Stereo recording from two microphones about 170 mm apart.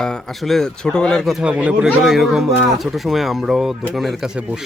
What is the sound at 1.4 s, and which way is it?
Speech, 5° right (ahead or behind).